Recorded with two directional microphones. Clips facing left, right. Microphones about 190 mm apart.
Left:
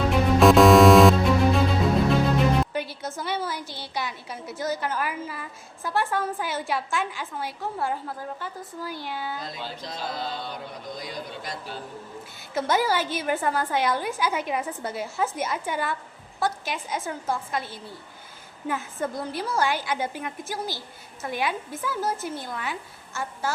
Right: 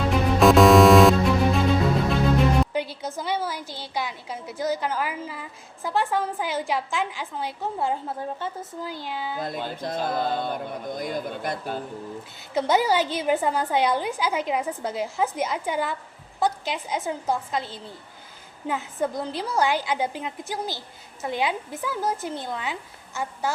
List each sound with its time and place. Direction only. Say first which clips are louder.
0.1 s music: even; centre (ahead or behind)
2.7 s music: right 2 dB; 15° right (ahead or behind)
3.2 s a woman's voice: right 2 dB; 15° right (ahead or behind)
9.4 s speech: right 6 dB; 55° right (ahead or behind)
12.5 s a woman's voice: right 3 dB; 15° right (ahead or behind)